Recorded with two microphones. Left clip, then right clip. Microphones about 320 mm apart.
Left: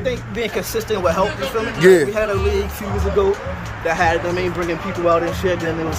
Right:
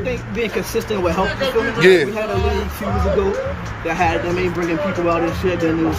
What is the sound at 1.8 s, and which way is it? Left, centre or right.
Speech, left.